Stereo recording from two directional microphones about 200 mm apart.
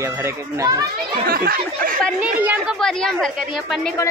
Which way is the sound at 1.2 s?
50° right (ahead or behind).